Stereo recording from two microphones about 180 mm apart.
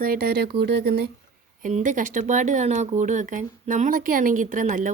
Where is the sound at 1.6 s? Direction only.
45° right (ahead or behind).